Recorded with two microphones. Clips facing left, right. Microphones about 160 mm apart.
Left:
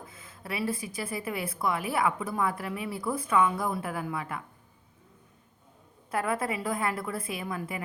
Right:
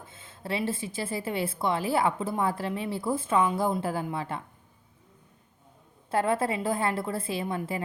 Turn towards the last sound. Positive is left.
turn(degrees=-30)  # may be behind; listen again after turning